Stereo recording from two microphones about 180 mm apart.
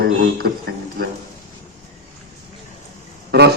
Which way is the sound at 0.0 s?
65° right (ahead or behind).